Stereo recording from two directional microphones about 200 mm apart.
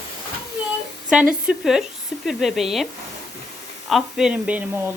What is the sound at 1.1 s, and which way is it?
Speech, 5° right (ahead or behind).